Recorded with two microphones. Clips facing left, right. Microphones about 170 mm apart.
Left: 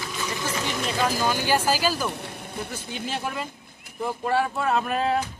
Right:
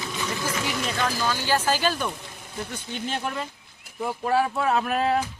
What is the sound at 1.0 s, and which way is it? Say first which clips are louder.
Speech: left 4 dB; 15° left (ahead or behind).